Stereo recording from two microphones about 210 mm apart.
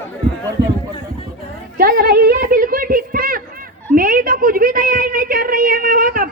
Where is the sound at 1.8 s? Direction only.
45° right (ahead or behind).